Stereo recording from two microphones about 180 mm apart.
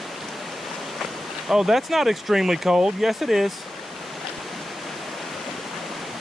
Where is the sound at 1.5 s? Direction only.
Centre (ahead or behind).